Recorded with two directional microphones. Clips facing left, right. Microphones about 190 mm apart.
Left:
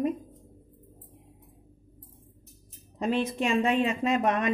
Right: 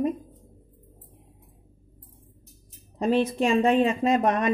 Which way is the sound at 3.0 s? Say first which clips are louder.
Right 5 dB; 35° right (ahead or behind).